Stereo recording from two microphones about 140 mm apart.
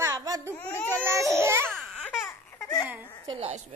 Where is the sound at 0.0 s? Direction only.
25° right (ahead or behind).